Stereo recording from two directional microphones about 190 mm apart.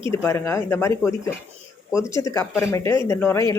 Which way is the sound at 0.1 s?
15° left (ahead or behind).